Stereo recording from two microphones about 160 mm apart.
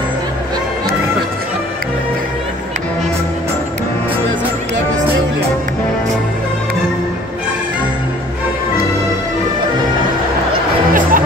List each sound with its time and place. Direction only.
10.9 s music: 60° right (ahead or behind)